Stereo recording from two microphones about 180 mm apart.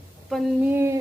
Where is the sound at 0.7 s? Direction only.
15° right (ahead or behind).